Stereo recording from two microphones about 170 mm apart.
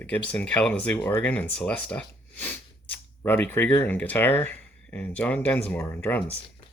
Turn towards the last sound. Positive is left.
turn(degrees=10)  # may be behind; listen again after turning